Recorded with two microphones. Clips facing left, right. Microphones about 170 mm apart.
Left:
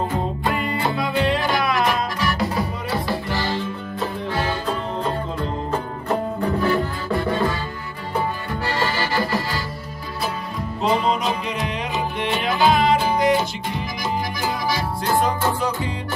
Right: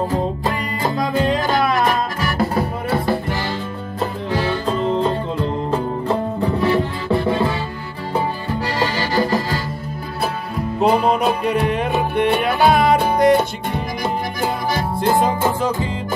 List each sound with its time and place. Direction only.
0.1 s music: 40° right (ahead or behind); by 3.2 s 55° right (ahead or behind)
6.6 s music: 25° right (ahead or behind)
8.7 s accordion: 40° right (ahead or behind)
10.8 s music: 60° right (ahead or behind)